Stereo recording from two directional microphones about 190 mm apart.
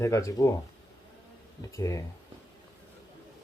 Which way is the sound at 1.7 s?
15° left (ahead or behind).